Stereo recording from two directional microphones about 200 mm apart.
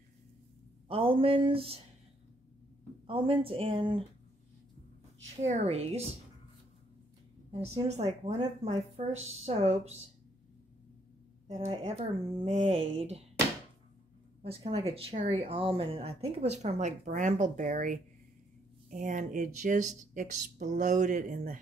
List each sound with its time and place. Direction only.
0.8 s speech: 25° right (ahead or behind)
3.1 s speech: 25° right (ahead or behind)
5.3 s speech: 35° right (ahead or behind)
7.6 s speech: 30° right (ahead or behind)
11.5 s speech: 30° right (ahead or behind)
14.4 s speech: 30° right (ahead or behind)